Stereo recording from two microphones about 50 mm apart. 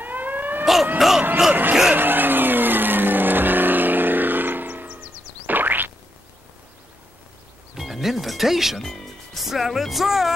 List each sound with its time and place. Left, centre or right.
0.0 s a sound: right
0.9 s music: centre
1.5 s music: right
2.0 s vehicle: right
5.5 s boing: right
7.7 s music: centre
8.8 s speech: centre